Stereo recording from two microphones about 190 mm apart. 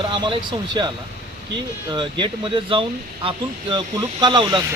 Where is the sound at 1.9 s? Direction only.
25° right (ahead or behind).